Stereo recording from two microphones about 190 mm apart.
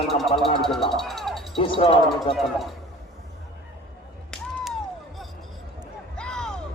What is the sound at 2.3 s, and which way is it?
Speech, centre (ahead or behind).